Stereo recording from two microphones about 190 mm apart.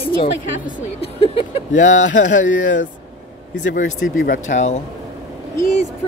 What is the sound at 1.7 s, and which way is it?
Speech, 40° left (ahead or behind).